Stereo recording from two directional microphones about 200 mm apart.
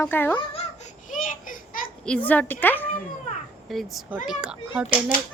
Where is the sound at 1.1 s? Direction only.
40° left (ahead or behind).